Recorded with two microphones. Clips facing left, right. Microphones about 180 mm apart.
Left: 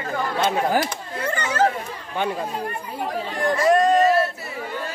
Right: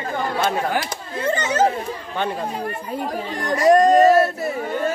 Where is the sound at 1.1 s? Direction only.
20° right (ahead or behind).